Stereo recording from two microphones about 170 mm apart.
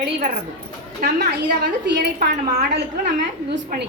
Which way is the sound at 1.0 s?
70° right (ahead or behind).